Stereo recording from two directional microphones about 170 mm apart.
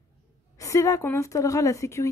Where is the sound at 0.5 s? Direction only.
20° left (ahead or behind).